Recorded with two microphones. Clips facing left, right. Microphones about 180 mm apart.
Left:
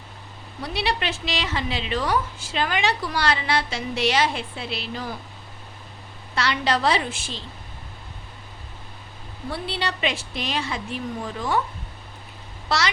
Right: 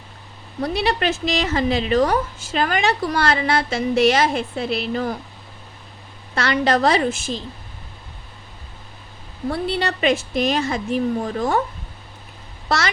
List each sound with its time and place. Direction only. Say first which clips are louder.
0.6 s a woman's voice: right 6 dB; 45° right (ahead or behind)
6.3 s a woman's voice: right 5 dB; 50° right (ahead or behind)
9.5 s a woman's voice: right 6 dB; 45° right (ahead or behind)
12.6 s a child's voice: right 2 dB; 50° right (ahead or behind)